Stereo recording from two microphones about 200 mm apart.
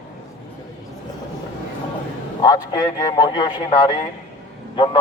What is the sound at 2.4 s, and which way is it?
A man's voice, 20° left (ahead or behind).